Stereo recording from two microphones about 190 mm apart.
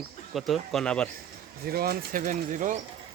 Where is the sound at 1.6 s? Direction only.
55° right (ahead or behind).